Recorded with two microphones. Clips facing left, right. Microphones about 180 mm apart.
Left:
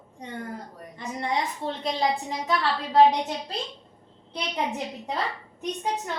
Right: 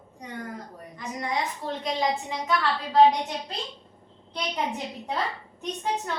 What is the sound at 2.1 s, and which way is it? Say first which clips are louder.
Speech: left 1 dB; 35° left (ahead or behind).